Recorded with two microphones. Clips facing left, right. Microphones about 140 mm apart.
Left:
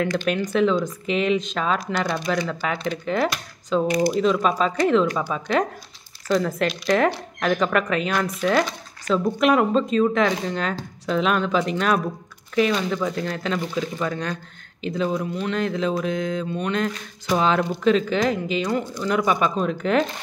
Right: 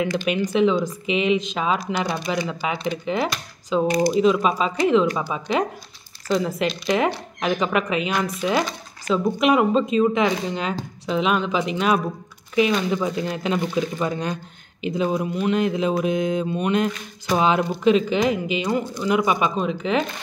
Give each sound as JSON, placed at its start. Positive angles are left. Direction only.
{"t": 0.0, "sound": "speech", "side_deg": -5}
{"t": 3.8, "sound": "speech", "side_deg": -30}
{"t": 4.1, "sound": "speech", "side_deg": -5}